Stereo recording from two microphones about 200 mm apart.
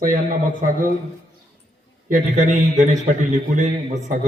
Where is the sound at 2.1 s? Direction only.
40° right (ahead or behind).